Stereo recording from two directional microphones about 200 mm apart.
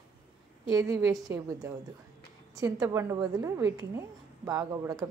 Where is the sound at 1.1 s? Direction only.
15° right (ahead or behind).